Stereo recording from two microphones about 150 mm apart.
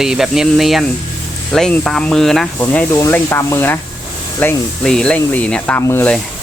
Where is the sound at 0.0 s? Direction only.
5° right (ahead or behind).